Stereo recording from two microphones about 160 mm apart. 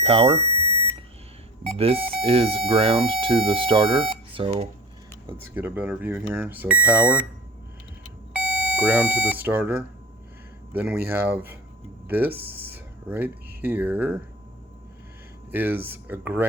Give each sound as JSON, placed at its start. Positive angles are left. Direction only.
{"t": 0.0, "sound": "speech", "side_deg": -35}
{"t": 1.6, "sound": "speech", "side_deg": -40}
{"t": 5.5, "sound": "speech", "side_deg": -10}
{"t": 8.3, "sound": "speech", "side_deg": -10}
{"t": 12.3, "sound": "speech", "side_deg": -75}
{"t": 12.7, "sound": "speech", "side_deg": -10}
{"t": 15.5, "sound": "speech", "side_deg": -10}